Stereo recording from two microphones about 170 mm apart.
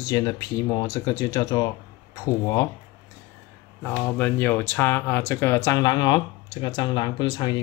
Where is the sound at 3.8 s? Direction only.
10° left (ahead or behind).